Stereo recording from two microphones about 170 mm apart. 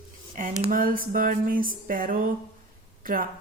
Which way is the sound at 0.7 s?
55° right (ahead or behind).